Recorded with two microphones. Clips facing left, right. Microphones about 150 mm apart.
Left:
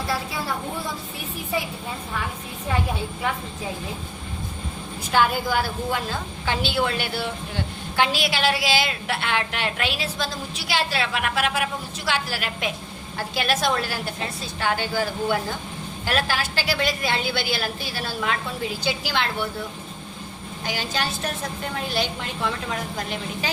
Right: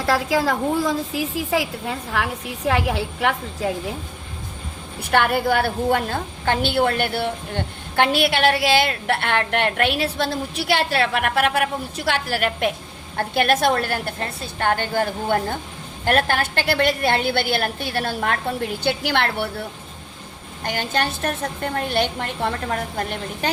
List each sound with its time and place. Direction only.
0.0 s a woman's voice: 85° right
5.1 s a woman's voice: 60° right (ahead or behind)
20.7 s a woman's voice: 55° right (ahead or behind)